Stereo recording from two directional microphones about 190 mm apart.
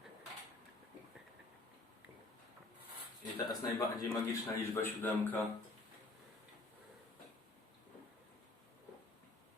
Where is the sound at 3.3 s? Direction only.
15° left (ahead or behind).